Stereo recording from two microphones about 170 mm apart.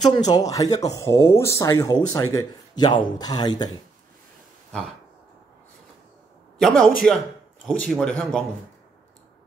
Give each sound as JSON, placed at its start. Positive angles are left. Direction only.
{"t": 0.0, "sound": "speech", "side_deg": 25}
{"t": 6.6, "sound": "speech", "side_deg": 5}